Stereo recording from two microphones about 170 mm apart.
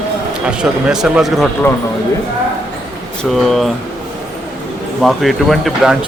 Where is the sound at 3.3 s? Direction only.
Centre (ahead or behind).